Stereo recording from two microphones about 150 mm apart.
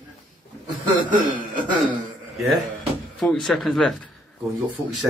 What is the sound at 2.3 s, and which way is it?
Speech, centre (ahead or behind).